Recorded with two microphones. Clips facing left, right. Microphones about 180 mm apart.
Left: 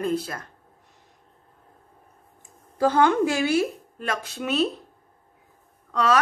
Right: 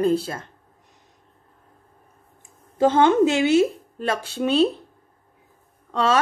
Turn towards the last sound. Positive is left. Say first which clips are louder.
# right 1 dB
turn(degrees=-25)  # may be behind; listen again after turning